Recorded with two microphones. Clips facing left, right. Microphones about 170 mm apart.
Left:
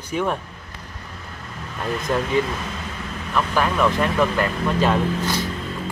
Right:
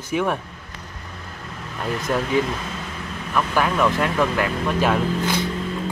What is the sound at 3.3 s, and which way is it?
Speech, 5° right (ahead or behind).